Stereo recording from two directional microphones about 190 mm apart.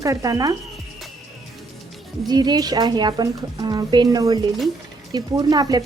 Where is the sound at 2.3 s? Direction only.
20° right (ahead or behind).